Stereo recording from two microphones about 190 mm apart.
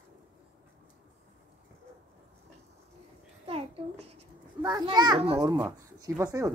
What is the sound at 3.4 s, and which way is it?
Babbling, 30° right (ahead or behind).